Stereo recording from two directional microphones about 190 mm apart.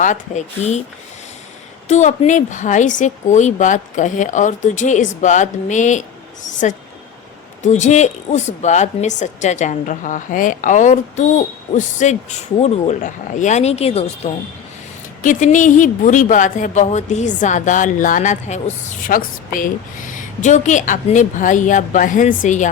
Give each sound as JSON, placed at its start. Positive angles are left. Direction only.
{"t": 0.0, "sound": "a woman's voice", "side_deg": 40}
{"t": 1.9, "sound": "a woman's voice", "side_deg": 40}